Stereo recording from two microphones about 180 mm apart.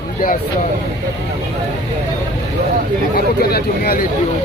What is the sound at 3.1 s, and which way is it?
Speech, 60° left (ahead or behind).